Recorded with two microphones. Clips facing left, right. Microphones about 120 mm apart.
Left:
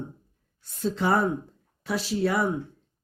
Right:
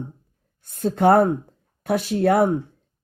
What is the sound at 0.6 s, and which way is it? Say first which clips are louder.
A woman's voice: right 8 dB; 55° right (ahead or behind).